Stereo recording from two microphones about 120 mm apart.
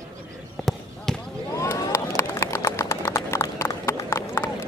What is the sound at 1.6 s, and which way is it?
Horse, 25° left (ahead or behind).